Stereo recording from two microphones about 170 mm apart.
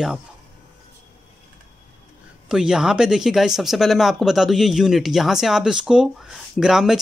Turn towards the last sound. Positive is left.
turn(degrees=-5)  # may be behind; listen again after turning